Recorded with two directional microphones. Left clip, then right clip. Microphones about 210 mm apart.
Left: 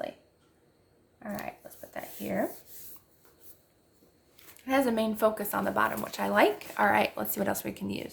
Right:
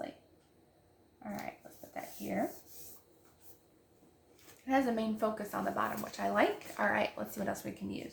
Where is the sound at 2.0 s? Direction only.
50° left (ahead or behind).